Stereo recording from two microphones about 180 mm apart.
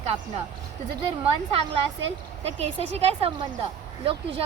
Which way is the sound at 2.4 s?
35° right (ahead or behind).